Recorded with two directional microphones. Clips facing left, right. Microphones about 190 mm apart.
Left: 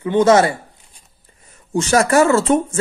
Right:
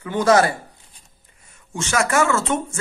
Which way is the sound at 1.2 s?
35° left (ahead or behind).